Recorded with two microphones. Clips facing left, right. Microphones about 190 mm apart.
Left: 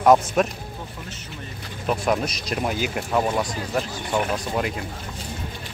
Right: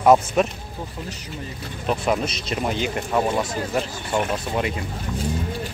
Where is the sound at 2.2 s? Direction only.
25° right (ahead or behind).